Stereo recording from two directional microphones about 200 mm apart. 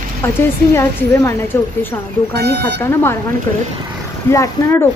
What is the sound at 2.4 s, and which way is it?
Speech, 55° right (ahead or behind).